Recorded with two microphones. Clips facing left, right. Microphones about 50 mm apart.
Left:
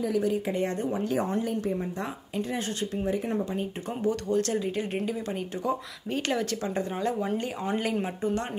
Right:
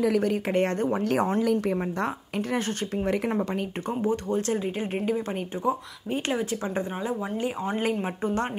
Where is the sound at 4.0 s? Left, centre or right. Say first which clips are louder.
Left 1 dB; right.